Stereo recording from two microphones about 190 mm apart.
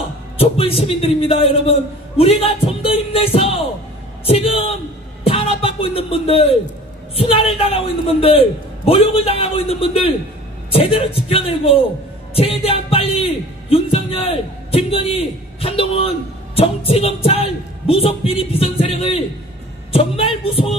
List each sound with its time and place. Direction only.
0.4 s a man's voice: 30° left (ahead or behind)
12.4 s music: 30° left (ahead or behind)
16.5 s a man's voice: 30° left (ahead or behind)